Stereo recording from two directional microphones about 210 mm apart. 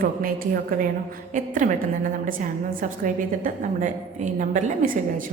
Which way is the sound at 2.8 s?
40° right (ahead or behind).